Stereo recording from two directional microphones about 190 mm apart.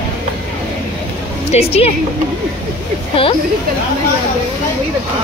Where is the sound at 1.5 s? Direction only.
30° left (ahead or behind).